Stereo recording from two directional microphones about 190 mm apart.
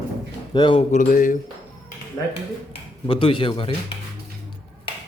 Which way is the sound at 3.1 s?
25° left (ahead or behind).